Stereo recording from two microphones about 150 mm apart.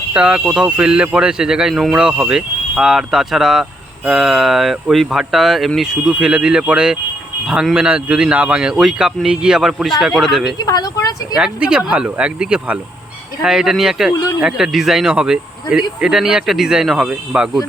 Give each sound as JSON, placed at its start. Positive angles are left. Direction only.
{"t": 0.1, "sound": "speech", "side_deg": -5}
{"t": 10.6, "sound": "speech", "side_deg": 25}
{"t": 11.3, "sound": "speech", "side_deg": -5}